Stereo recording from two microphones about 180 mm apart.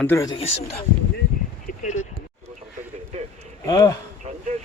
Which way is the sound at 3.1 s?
40° right (ahead or behind).